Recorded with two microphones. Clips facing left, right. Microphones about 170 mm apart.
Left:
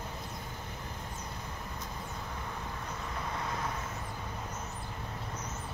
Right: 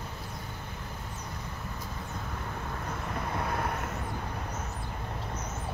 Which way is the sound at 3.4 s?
65° right (ahead or behind).